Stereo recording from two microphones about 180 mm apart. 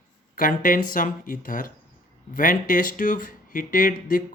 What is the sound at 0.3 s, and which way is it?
Speech, 50° left (ahead or behind).